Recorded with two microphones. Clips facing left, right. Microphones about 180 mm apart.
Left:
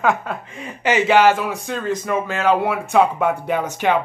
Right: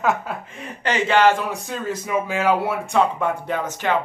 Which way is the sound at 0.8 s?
10° left (ahead or behind).